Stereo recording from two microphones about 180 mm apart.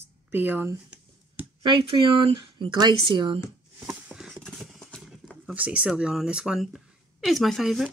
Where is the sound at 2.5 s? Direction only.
25° right (ahead or behind).